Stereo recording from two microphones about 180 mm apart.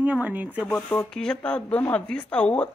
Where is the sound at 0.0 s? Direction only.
10° right (ahead or behind).